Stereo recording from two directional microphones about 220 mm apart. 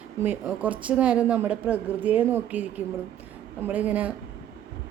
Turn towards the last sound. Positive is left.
turn(degrees=-5)  # may be behind; listen again after turning